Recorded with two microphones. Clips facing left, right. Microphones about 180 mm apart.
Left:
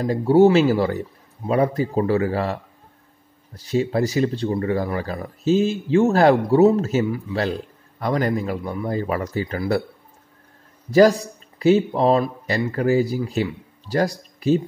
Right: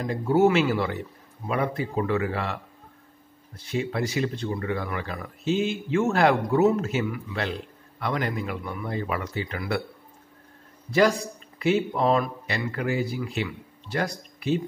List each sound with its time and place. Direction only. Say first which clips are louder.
0.0 s speech: left 6 dB; 35° left (ahead or behind)
10.9 s speech: left 7 dB; 40° left (ahead or behind)